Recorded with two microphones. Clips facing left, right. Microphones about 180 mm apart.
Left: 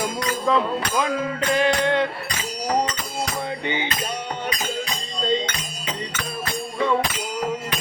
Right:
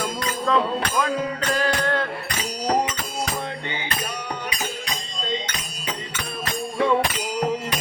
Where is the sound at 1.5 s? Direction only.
20° left (ahead or behind).